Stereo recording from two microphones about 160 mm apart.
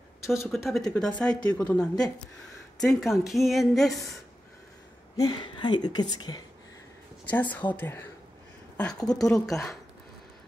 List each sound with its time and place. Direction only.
0.3 s a woman's voice: centre (ahead or behind)
5.2 s a woman's voice: 30° left (ahead or behind)
7.5 s a woman's voice: 10° left (ahead or behind)